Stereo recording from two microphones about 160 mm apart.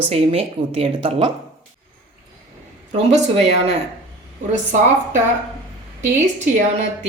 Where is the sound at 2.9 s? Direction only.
45° right (ahead or behind).